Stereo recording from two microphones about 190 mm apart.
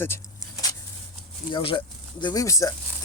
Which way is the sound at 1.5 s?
25° left (ahead or behind).